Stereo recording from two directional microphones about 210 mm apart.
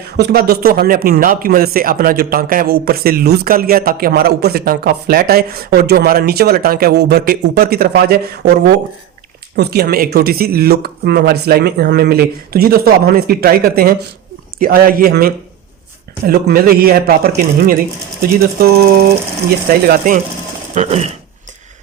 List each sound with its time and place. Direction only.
0.2 s speech: 50° right (ahead or behind)
20.7 s speech: 30° right (ahead or behind)